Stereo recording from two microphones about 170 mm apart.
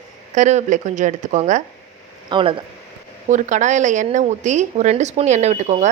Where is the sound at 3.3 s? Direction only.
45° right (ahead or behind).